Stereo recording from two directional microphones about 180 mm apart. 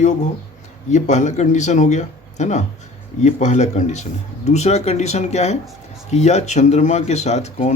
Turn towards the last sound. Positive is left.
turn(degrees=40)  # may be behind; listen again after turning